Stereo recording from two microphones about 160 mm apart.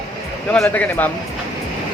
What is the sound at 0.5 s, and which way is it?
Speech, 10° left (ahead or behind).